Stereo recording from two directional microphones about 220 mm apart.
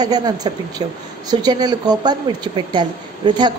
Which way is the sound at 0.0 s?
15° right (ahead or behind).